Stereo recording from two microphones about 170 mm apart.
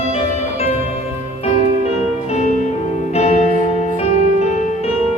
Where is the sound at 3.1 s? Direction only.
45° left (ahead or behind).